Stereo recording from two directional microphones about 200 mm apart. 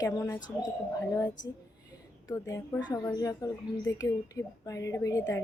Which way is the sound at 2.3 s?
15° left (ahead or behind).